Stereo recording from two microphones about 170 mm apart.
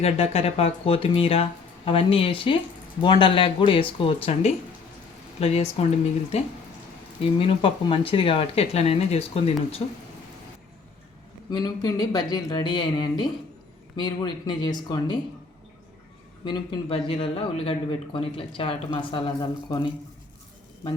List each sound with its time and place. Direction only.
0.0 s speech: 35° left (ahead or behind)
11.5 s speech: 20° left (ahead or behind)
16.4 s speech: 30° left (ahead or behind)